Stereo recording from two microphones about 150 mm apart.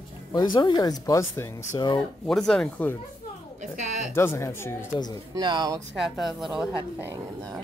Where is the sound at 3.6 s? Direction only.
55° right (ahead or behind).